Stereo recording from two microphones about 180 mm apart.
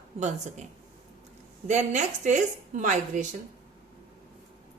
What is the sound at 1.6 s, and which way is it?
A woman's voice, 40° right (ahead or behind).